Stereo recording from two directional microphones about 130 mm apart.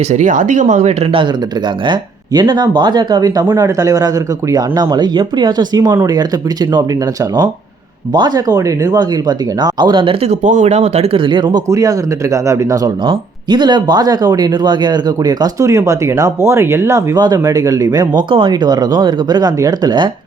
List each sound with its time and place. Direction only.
0.1 s speech: 75° right (ahead or behind)
1.9 s speech: 35° right (ahead or behind)
8.1 s speech: 30° right (ahead or behind)
10.2 s speech: 65° right (ahead or behind); by 11.6 s 35° right (ahead or behind)
11.7 s speech: 25° right (ahead or behind)
18.2 s speech: 40° right (ahead or behind)